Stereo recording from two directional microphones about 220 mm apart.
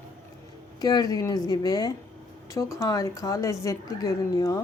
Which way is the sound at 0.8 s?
15° left (ahead or behind).